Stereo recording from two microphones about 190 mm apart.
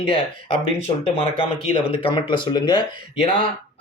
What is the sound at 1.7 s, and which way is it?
Speech, 30° left (ahead or behind).